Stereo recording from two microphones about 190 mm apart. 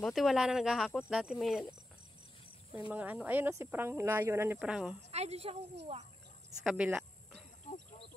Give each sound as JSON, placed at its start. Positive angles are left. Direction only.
{"t": 0.0, "sound": "speech", "side_deg": 0}
{"t": 2.9, "sound": "speech", "side_deg": -10}
{"t": 5.1, "sound": "a woman's voice", "side_deg": -35}
{"t": 6.6, "sound": "a sound", "side_deg": -5}